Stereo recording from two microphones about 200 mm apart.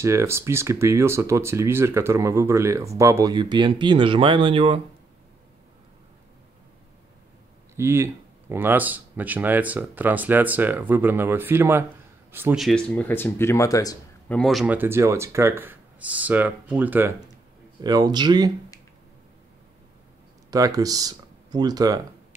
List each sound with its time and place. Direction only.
0.0 s speech: 15° right (ahead or behind)
7.7 s speech: 15° right (ahead or behind); by 13.9 s 15° left (ahead or behind)
14.3 s speech: centre (ahead or behind)
17.8 s speech: 20° right (ahead or behind)
20.5 s speech: 15° right (ahead or behind)